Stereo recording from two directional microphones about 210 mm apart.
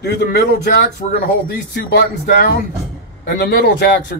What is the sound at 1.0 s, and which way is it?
Speech, 30° left (ahead or behind).